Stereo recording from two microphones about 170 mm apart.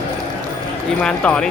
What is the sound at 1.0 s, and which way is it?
Speech, 5° left (ahead or behind).